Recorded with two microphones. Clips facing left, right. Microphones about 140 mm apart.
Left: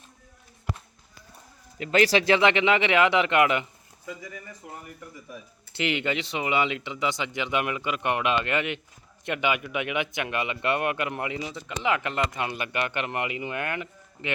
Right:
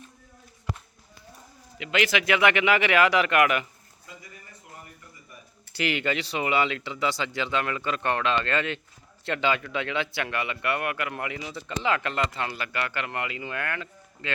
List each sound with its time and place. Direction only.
1.8 s speech: 40° left (ahead or behind); by 3.7 s 20° left (ahead or behind)
4.9 s speech: 90° left
5.7 s speech: 20° left (ahead or behind)